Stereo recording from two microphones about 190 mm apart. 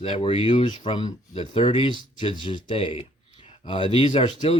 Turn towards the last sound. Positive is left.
turn(degrees=30)  # may be behind; listen again after turning